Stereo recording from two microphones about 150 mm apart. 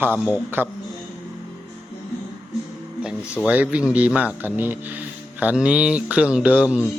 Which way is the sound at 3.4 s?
10° right (ahead or behind).